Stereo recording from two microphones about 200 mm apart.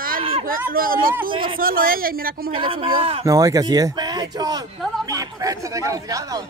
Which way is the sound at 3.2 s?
15° right (ahead or behind).